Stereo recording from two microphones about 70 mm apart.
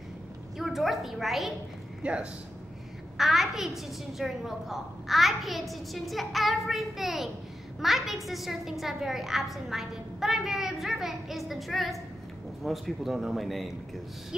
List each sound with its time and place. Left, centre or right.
0.6 s a woman's voice: centre
2.0 s a man's voice: centre
3.2 s a woman's voice: centre